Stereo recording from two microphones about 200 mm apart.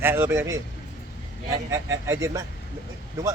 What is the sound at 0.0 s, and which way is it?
Speech, 10° right (ahead or behind).